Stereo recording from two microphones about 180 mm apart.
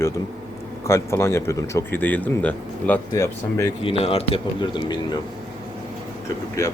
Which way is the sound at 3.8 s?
30° left (ahead or behind).